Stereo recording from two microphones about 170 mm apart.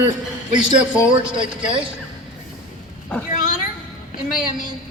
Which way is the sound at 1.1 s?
30° right (ahead or behind).